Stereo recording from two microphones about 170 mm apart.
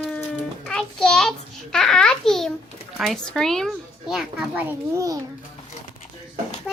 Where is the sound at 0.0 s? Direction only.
5° left (ahead or behind).